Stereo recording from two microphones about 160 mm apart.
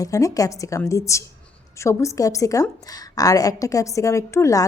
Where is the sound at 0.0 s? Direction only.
20° left (ahead or behind).